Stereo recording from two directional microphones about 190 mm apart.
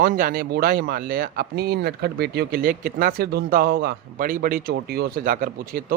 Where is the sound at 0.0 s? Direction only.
50° right (ahead or behind).